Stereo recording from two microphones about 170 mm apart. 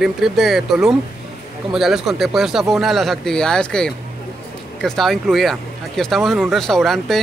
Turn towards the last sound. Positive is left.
turn(degrees=0)  # may be behind; listen again after turning